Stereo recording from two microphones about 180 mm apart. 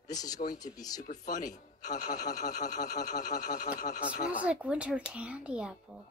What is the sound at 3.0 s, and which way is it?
Speech, 45° left (ahead or behind).